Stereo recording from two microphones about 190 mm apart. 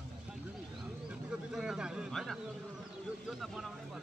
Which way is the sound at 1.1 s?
5° right (ahead or behind).